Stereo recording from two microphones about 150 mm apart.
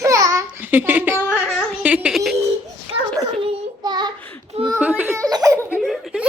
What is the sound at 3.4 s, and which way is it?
Child singing, 30° right (ahead or behind).